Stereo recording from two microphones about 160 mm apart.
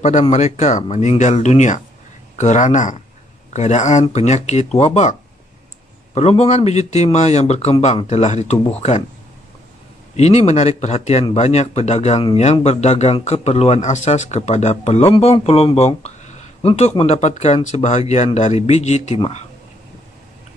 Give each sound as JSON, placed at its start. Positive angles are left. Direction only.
{"t": 0.0, "sound": "speech", "side_deg": 45}
{"t": 6.1, "sound": "speech", "side_deg": 40}
{"t": 10.1, "sound": "a man's voice", "side_deg": 45}
{"t": 16.0, "sound": "a sound", "side_deg": 45}
{"t": 17.0, "sound": "speech", "side_deg": 45}